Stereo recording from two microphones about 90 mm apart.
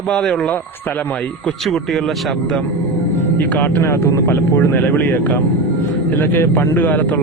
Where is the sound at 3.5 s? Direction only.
20° left (ahead or behind).